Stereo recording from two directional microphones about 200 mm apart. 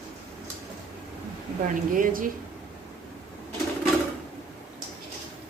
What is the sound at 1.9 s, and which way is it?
Speech, 45° right (ahead or behind).